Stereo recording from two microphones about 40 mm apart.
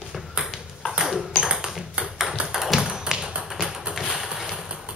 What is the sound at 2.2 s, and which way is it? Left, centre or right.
Tap, centre.